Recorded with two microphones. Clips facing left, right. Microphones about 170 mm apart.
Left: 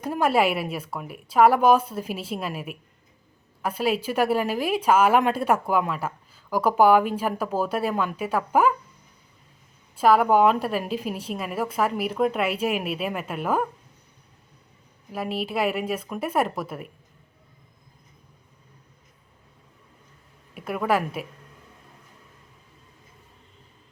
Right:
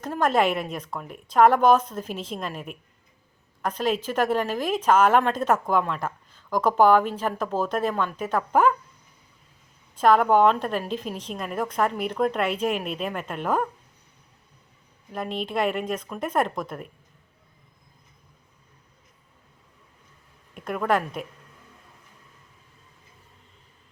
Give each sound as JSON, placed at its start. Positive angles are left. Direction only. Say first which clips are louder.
{"t": 0.0, "sound": "a woman's voice", "louder": "left 1 dB", "side_deg": 10}
{"t": 9.9, "sound": "a woman's voice", "louder": "even", "side_deg": 5}
{"t": 15.1, "sound": "a woman's voice", "louder": "left 1 dB", "side_deg": 5}
{"t": 20.5, "sound": "a woman's voice", "louder": "even", "side_deg": 5}